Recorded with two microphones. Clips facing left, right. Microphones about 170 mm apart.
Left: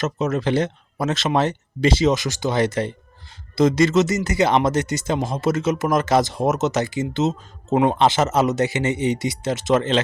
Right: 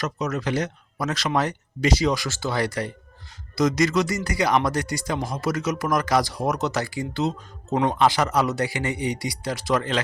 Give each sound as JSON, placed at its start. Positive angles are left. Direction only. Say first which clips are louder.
{"t": 0.0, "sound": "speech", "louder": "left 5 dB", "side_deg": 25}